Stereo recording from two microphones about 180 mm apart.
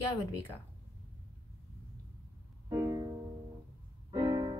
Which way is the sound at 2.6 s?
15° right (ahead or behind).